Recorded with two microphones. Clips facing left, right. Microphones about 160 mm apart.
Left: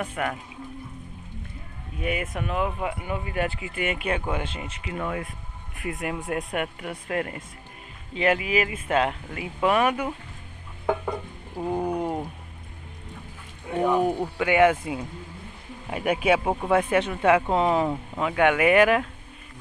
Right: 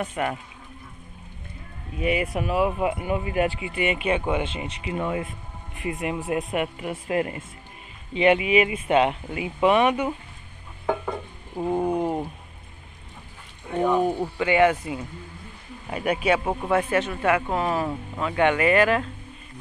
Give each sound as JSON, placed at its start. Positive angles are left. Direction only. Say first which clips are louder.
{"t": 0.0, "sound": "speech", "louder": "right 2 dB", "side_deg": -10}
{"t": 2.0, "sound": "speech", "louder": "right 4 dB", "side_deg": -5}
{"t": 2.8, "sound": "speech", "louder": "right 5 dB", "side_deg": -20}
{"t": 5.8, "sound": "speech", "louder": "right 2 dB", "side_deg": 0}
{"t": 11.5, "sound": "speech", "louder": "right 3 dB", "side_deg": 0}
{"t": 13.7, "sound": "speech", "louder": "right 1 dB", "side_deg": 5}